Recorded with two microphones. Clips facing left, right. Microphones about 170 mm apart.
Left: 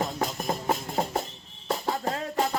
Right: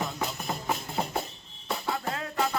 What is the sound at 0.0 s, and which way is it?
Music, 45° left (ahead or behind).